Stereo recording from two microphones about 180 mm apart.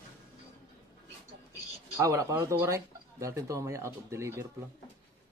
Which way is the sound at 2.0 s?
15° right (ahead or behind).